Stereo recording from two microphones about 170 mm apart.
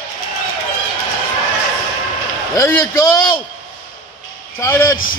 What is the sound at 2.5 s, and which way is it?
Speech, 15° left (ahead or behind).